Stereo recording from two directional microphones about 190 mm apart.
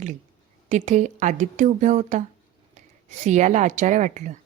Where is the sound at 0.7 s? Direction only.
40° right (ahead or behind).